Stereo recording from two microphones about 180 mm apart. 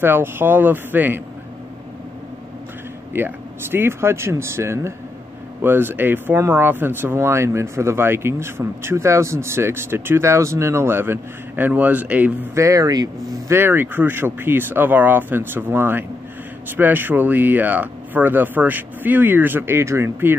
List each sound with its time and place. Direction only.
0.0 s speech: 10° right (ahead or behind)
3.1 s speech: 10° right (ahead or behind)